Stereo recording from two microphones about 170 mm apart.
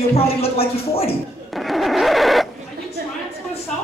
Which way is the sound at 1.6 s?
Centre (ahead or behind).